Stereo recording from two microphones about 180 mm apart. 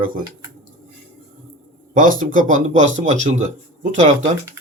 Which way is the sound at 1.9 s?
50° right (ahead or behind).